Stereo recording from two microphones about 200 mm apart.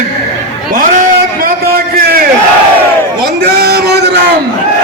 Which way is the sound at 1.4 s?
50° right (ahead or behind).